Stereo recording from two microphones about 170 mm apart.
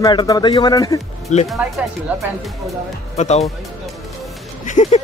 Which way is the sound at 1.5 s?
10° right (ahead or behind).